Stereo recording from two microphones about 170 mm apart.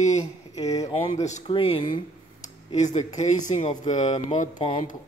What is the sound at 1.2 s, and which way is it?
Speech, 40° left (ahead or behind).